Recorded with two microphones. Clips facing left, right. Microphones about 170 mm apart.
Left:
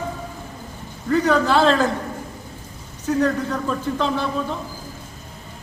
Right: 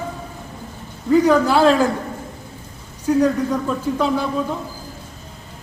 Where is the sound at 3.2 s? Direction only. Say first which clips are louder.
Right 3 dB; 10° right (ahead or behind).